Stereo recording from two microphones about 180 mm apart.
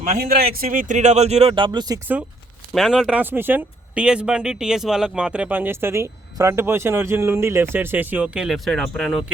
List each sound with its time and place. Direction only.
0.2 s speech: 60° right (ahead or behind); by 2.0 s 25° right (ahead or behind)
2.7 s speech: centre (ahead or behind)